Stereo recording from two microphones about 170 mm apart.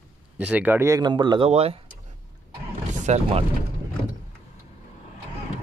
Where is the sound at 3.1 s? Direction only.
45° right (ahead or behind).